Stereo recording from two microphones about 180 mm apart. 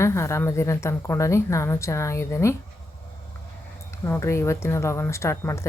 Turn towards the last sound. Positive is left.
turn(degrees=15)  # may be behind; listen again after turning